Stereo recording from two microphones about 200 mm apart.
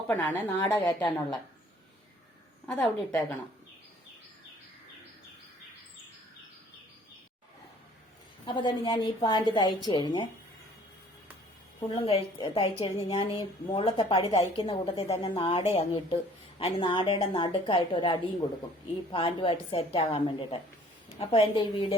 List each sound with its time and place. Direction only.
0.1 s a woman's voice: 10° left (ahead or behind)
0.7 s a woman's voice: 20° left (ahead or behind)
2.6 s a woman's voice: centre (ahead or behind)
8.4 s a woman's voice: 25° left (ahead or behind)
11.8 s a woman's voice: 25° left (ahead or behind)